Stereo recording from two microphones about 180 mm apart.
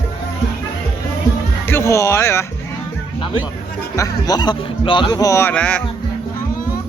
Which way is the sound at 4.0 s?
20° left (ahead or behind).